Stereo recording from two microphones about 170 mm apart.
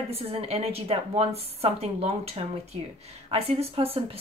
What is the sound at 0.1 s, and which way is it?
Speech, 35° right (ahead or behind).